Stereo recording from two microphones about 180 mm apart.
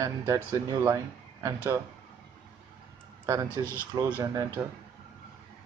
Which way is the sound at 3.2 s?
15° right (ahead or behind).